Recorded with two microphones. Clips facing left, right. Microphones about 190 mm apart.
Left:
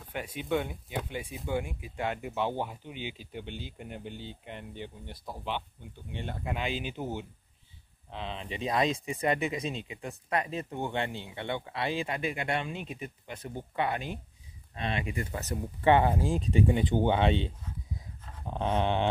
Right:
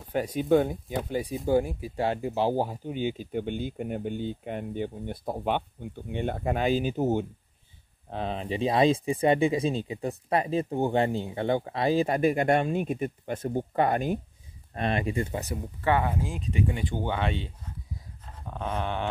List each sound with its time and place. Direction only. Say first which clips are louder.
0.1 s speech: right 9 dB; 40° right (ahead or behind)
15.8 s speech: left 3 dB; 25° left (ahead or behind)
18.5 s speech: left 3 dB; 25° left (ahead or behind)